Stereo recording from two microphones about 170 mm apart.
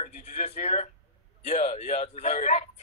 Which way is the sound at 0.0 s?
40° left (ahead or behind).